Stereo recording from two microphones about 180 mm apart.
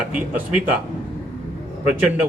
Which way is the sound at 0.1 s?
10° right (ahead or behind).